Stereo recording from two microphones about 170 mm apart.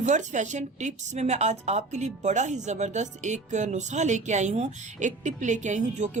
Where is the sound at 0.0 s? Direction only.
45° right (ahead or behind).